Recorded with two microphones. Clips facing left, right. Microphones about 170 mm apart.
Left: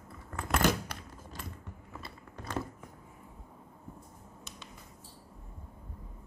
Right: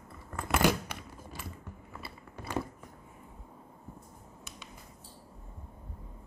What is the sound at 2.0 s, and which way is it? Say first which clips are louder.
Biting: right 1 dB; 10° right (ahead or behind).